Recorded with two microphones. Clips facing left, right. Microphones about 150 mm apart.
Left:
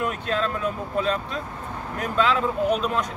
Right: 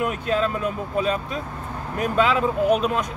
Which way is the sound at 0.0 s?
10° right (ahead or behind).